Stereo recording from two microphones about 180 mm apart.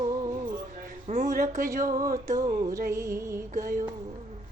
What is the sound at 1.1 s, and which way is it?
Female singing, 45° right (ahead or behind).